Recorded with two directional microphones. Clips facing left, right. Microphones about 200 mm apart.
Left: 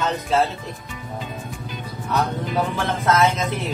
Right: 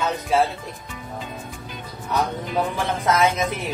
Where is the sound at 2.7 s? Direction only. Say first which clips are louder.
Left 1 dB; 15° right (ahead or behind).